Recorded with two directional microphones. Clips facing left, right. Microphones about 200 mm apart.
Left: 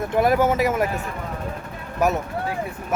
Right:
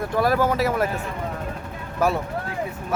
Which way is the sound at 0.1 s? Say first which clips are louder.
Left 2 dB; 20° left (ahead or behind).